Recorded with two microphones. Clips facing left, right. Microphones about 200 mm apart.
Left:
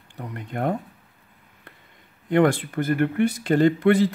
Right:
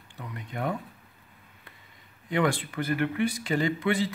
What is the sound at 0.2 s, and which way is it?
Speech, 55° left (ahead or behind).